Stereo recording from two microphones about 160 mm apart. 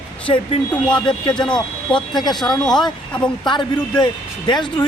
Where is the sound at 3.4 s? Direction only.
30° left (ahead or behind).